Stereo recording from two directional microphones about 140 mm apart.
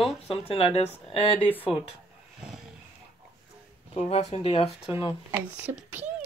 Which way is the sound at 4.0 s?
50° left (ahead or behind).